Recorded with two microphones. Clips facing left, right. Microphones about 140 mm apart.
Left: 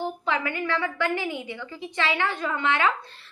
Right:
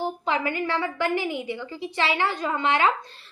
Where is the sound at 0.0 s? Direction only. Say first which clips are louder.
Right 2 dB; 30° right (ahead or behind).